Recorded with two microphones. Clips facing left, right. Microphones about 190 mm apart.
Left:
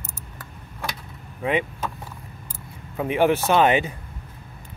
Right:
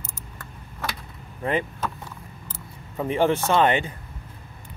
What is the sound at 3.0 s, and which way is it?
Speech, 5° left (ahead or behind).